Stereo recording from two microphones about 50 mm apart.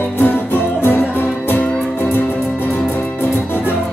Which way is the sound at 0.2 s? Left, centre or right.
Left.